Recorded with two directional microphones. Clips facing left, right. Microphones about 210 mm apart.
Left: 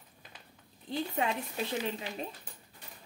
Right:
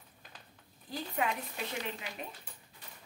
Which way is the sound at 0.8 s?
30° left (ahead or behind).